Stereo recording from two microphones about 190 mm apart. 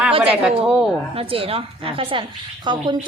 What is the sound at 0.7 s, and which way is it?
Speech, centre (ahead or behind).